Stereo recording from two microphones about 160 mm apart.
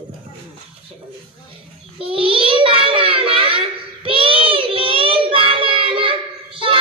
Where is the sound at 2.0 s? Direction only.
35° right (ahead or behind).